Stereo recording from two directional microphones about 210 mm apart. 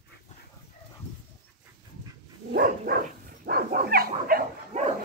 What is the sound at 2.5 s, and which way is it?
Dog, 45° right (ahead or behind).